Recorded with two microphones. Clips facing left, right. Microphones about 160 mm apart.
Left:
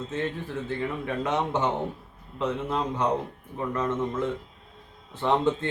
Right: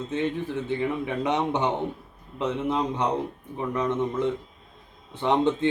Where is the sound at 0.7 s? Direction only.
20° right (ahead or behind).